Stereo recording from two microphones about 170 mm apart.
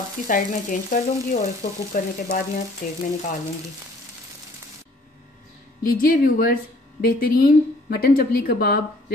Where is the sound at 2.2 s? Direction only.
55° left (ahead or behind).